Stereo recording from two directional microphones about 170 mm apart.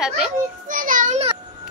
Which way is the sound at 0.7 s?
50° right (ahead or behind).